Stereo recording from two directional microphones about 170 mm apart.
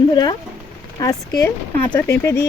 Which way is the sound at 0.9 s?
20° left (ahead or behind).